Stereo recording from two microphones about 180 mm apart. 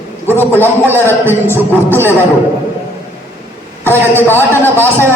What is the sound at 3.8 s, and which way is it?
A man's voice, 10° left (ahead or behind).